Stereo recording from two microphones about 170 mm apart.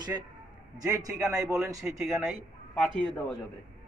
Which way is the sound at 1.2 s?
Centre (ahead or behind).